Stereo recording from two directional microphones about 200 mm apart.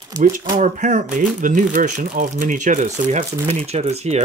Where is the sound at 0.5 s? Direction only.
35° right (ahead or behind).